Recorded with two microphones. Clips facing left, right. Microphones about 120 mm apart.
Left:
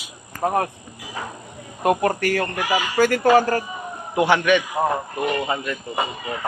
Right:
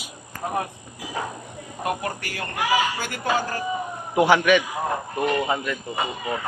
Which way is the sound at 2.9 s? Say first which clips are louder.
Left 10 dB; 80° left.